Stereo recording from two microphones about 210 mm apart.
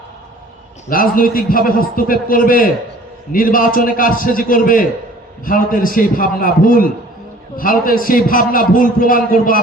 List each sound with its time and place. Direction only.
0.9 s a man's voice: 40° left (ahead or behind)